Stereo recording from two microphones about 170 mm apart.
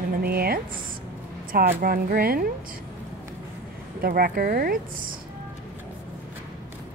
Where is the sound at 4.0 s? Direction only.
60° right (ahead or behind).